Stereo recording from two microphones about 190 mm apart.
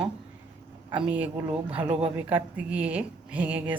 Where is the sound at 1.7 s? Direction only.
30° right (ahead or behind).